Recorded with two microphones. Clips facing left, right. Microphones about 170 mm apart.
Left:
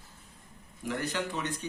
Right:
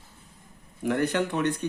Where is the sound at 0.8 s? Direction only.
60° right (ahead or behind).